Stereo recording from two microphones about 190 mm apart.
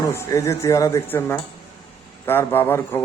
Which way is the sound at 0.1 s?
15° left (ahead or behind).